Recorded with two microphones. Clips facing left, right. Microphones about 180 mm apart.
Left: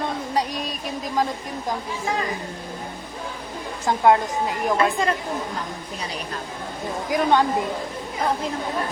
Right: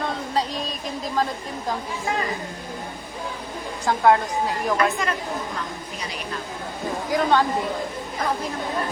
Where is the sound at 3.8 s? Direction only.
20° left (ahead or behind).